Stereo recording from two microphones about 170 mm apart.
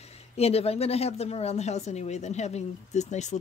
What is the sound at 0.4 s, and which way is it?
A woman's voice, 35° left (ahead or behind).